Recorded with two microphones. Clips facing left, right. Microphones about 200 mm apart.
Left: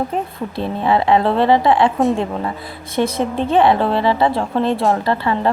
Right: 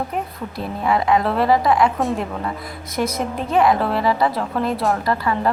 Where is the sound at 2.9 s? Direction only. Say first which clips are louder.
Left 4 dB; 30° left (ahead or behind).